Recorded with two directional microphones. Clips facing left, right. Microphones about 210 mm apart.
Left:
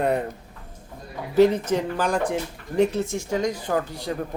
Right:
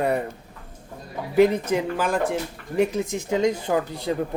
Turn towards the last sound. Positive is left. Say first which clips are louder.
# right 2 dB
turn(degrees=-20)  # may be behind; listen again after turning